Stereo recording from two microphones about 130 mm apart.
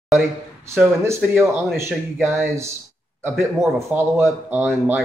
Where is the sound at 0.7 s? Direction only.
15° right (ahead or behind).